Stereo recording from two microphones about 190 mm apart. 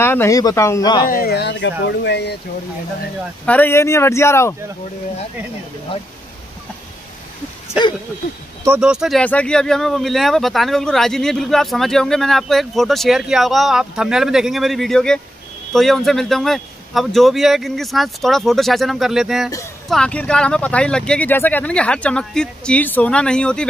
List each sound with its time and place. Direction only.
0.0 s speech: 10° left (ahead or behind)
1.0 s speech: 50° left (ahead or behind)
3.4 s speech: 10° left (ahead or behind)
8.6 s speech: 5° right (ahead or behind)